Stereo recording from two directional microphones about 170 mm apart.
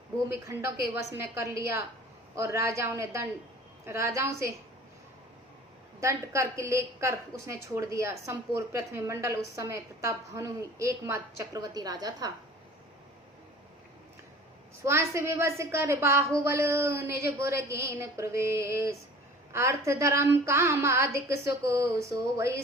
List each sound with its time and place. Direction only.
0.3 s a woman's voice: 15° right (ahead or behind)
6.0 s a woman's voice: 15° right (ahead or behind)
14.8 s a woman's voice: 15° right (ahead or behind)